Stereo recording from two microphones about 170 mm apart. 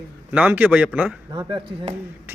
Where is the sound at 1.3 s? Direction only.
30° right (ahead or behind).